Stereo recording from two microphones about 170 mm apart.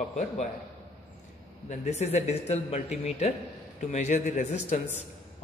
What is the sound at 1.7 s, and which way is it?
A man's voice, 40° left (ahead or behind).